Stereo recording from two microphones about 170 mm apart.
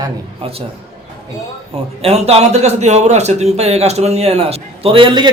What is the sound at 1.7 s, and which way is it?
Speech, 35° right (ahead or behind).